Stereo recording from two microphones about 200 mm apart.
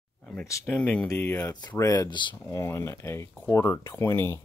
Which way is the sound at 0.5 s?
15° left (ahead or behind).